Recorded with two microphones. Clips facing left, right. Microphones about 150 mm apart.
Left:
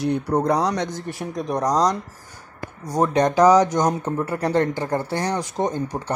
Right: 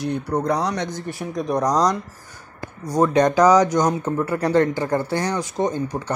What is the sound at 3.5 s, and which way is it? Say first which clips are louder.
Speech: right 1 dB; 10° right (ahead or behind).